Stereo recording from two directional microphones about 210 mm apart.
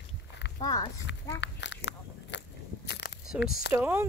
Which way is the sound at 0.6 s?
20° left (ahead or behind).